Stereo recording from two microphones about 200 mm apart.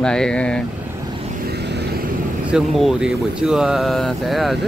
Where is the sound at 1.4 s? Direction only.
55° right (ahead or behind).